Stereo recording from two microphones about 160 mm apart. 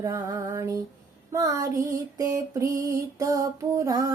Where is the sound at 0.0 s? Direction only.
20° right (ahead or behind).